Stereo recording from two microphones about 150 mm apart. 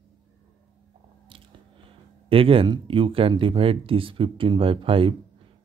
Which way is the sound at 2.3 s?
40° right (ahead or behind).